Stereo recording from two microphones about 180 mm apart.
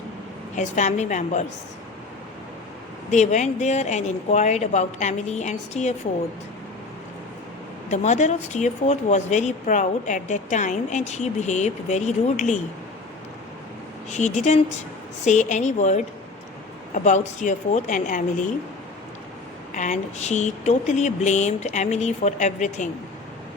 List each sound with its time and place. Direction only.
0.5 s speech: 40° left (ahead or behind)
3.1 s speech: 40° left (ahead or behind)
7.9 s speech: 40° left (ahead or behind)
14.1 s a woman's voice: 40° left (ahead or behind)
19.7 s speech: 45° left (ahead or behind)